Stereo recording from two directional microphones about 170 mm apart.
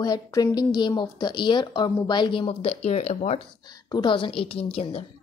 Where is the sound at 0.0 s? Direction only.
25° left (ahead or behind); by 3.3 s 40° left (ahead or behind).